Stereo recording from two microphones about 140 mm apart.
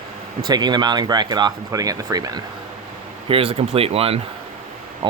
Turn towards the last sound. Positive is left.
turn(degrees=-45)  # may be behind; listen again after turning